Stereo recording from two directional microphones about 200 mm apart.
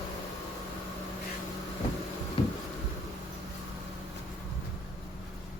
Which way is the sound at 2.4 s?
25° left (ahead or behind).